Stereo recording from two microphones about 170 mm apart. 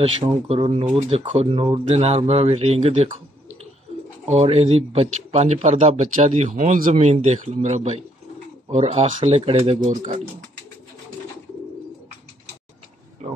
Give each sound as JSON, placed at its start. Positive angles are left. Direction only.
{"t": 0.0, "sound": "speech", "side_deg": -35}
{"t": 4.3, "sound": "speech", "side_deg": -40}
{"t": 13.2, "sound": "oink", "side_deg": -40}